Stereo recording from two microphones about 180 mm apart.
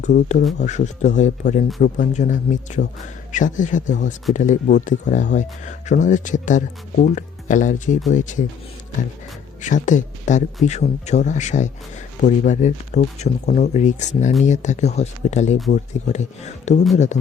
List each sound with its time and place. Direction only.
0.0 s speech: 45° left (ahead or behind)
9.6 s speech: 45° left (ahead or behind)